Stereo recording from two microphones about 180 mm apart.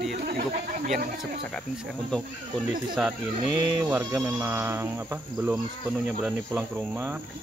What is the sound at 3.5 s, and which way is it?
Speech, 25° right (ahead or behind).